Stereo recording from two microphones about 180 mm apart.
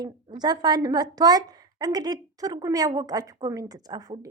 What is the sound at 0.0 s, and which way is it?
A woman's voice, 25° right (ahead or behind).